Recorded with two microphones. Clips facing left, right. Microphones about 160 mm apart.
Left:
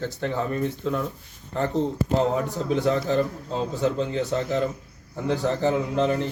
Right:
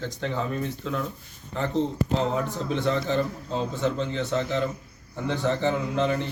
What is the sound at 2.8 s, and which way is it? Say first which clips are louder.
A man's voice: left 1 dB; 5° left (ahead or behind).